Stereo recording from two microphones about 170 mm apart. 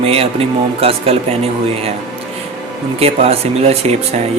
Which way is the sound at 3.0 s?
35° right (ahead or behind).